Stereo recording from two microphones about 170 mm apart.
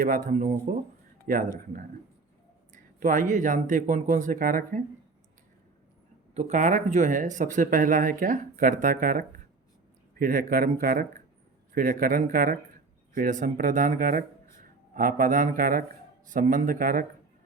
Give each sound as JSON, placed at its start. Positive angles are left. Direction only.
{"t": 0.0, "sound": "speech", "side_deg": -55}
{"t": 2.7, "sound": "speech", "side_deg": -50}
{"t": 6.3, "sound": "speech", "side_deg": -45}